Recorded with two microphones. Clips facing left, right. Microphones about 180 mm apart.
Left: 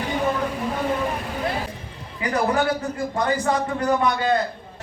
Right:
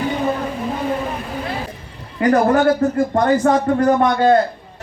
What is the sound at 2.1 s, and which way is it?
A man's voice, 50° right (ahead or behind).